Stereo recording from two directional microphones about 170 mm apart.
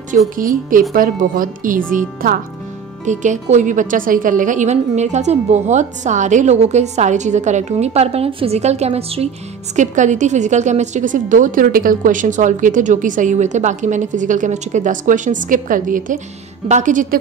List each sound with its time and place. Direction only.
0.4 s a woman's voice: 55° right (ahead or behind)